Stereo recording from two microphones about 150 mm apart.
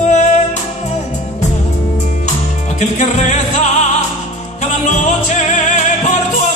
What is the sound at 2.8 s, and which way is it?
Music, 50° left (ahead or behind).